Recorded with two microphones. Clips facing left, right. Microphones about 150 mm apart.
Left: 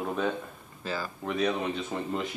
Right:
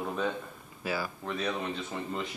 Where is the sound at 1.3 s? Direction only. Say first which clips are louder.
Left 6 dB; 10° left (ahead or behind).